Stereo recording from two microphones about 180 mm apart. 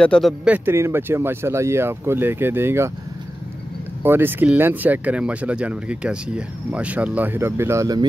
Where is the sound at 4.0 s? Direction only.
10° right (ahead or behind).